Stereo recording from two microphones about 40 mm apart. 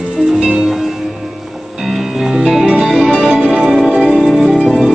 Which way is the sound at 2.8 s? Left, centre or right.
Centre.